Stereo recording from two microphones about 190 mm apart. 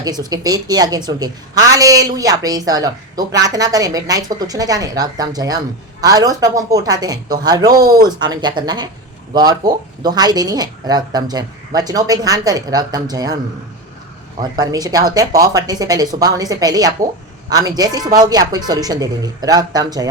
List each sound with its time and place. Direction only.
0.0 s a woman's voice: 20° right (ahead or behind)
14.5 s a woman's voice: 20° right (ahead or behind)